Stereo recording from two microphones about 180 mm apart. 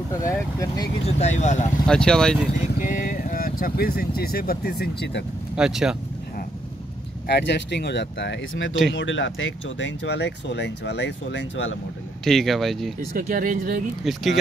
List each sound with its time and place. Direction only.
0.1 s speech: 15° left (ahead or behind)
1.0 s speech: 40° left (ahead or behind)
1.9 s speech: 5° left (ahead or behind)
2.7 s speech: 50° left (ahead or behind); by 5.2 s 65° left (ahead or behind)
5.6 s speech: 5° right (ahead or behind)
7.2 s speech: 70° left (ahead or behind)
12.3 s speech: centre (ahead or behind)
13.3 s speech: 50° right (ahead or behind)
14.0 s speech: centre (ahead or behind)